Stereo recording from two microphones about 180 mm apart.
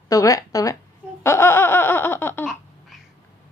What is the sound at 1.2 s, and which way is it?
Laughter, 15° left (ahead or behind).